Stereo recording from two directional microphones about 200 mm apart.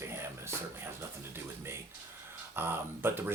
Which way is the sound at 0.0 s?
15° right (ahead or behind).